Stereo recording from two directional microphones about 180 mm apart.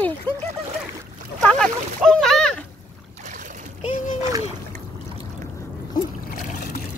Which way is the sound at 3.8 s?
45° left (ahead or behind).